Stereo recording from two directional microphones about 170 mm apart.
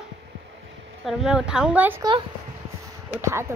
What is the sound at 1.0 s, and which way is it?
Speech, 5° right (ahead or behind).